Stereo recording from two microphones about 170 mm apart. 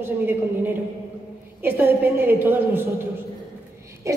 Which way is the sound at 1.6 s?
10° right (ahead or behind).